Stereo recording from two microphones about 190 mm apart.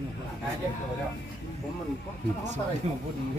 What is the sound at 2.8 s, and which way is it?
Speech, 35° right (ahead or behind).